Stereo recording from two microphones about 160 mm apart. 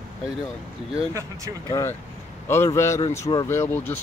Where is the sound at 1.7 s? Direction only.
20° left (ahead or behind).